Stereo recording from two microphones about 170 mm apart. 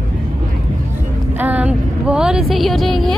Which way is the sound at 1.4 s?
10° right (ahead or behind).